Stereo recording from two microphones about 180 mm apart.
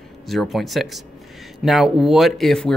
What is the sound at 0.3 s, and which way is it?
Speech, centre (ahead or behind).